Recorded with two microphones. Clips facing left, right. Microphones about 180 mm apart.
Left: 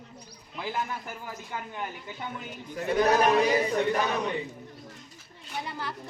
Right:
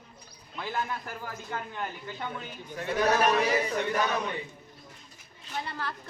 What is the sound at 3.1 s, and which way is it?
Speech, 25° left (ahead or behind).